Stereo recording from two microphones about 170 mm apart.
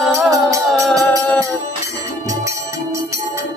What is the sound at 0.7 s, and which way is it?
Music, centre (ahead or behind).